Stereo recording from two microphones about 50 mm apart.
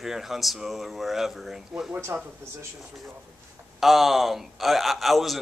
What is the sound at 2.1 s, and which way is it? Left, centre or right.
Speech, right.